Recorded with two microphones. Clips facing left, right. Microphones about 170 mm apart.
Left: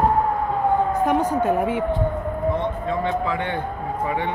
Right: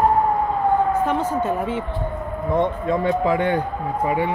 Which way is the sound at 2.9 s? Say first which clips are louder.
Right 2 dB; 40° right (ahead or behind).